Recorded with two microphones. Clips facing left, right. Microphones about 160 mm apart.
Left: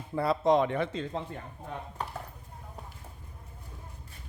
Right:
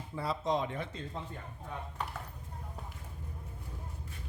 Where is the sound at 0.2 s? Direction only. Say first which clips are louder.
Left 8 dB; 65° left (ahead or behind).